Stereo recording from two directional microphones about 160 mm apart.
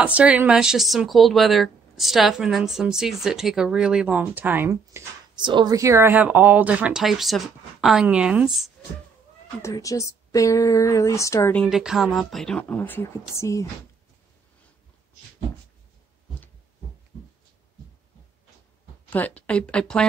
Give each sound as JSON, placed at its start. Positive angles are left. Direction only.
{"t": 0.0, "sound": "speech", "side_deg": -10}
{"t": 5.3, "sound": "speech", "side_deg": -30}
{"t": 9.6, "sound": "speech", "side_deg": 20}
{"t": 11.5, "sound": "speech", "side_deg": 5}
{"t": 19.0, "sound": "speech", "side_deg": 10}